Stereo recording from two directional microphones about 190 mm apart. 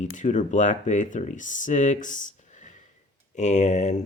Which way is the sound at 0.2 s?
40° left (ahead or behind).